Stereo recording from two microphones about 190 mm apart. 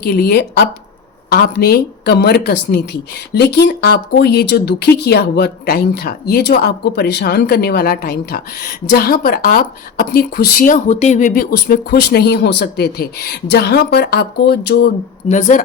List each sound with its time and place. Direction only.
0.0 s speech: 55° left (ahead or behind)
15.3 s a woman's voice: 40° left (ahead or behind)